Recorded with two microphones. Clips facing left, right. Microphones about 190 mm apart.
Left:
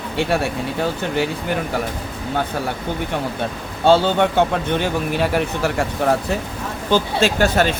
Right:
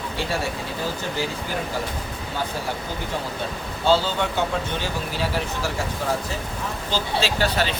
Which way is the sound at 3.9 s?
60° left (ahead or behind).